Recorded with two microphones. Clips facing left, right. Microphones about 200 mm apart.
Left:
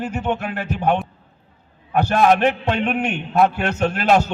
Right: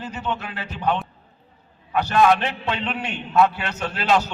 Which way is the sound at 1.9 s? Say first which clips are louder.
Left 2 dB; 50° left (ahead or behind).